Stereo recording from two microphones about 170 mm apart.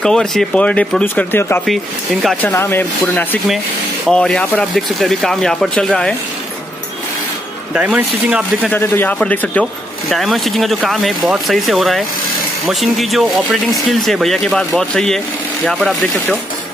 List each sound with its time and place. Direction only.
0.0 s speech: 5° left (ahead or behind)
7.7 s speech: 10° right (ahead or behind)
8.7 s speech: 10° left (ahead or behind)